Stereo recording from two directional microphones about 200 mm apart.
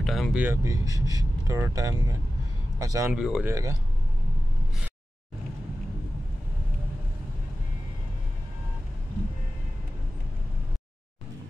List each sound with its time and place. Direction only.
0.0 s speech: centre (ahead or behind); by 3.2 s 15° right (ahead or behind)
3.2 s speech: 5° right (ahead or behind)